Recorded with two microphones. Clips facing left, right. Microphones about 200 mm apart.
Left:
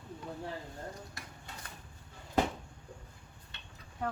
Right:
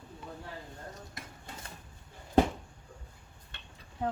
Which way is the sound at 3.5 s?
50° right (ahead or behind).